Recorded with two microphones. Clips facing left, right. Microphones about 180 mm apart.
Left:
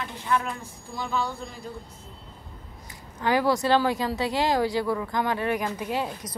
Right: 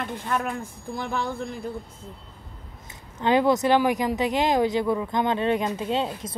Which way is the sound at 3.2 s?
20° right (ahead or behind).